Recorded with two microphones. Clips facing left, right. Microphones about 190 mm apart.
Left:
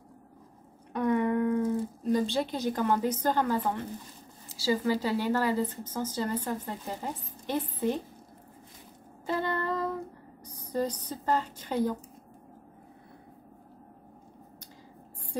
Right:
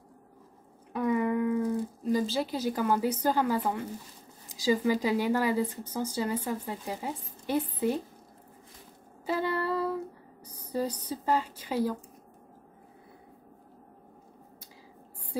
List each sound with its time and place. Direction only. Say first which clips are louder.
0.9 s a sound: left 1 dB; 5° right (ahead or behind)
4.5 s speech: right 1 dB; 15° right (ahead or behind)
9.2 s female singing: right 1 dB; 10° right (ahead or behind)
10.4 s speech: left 1 dB; 10° right (ahead or behind)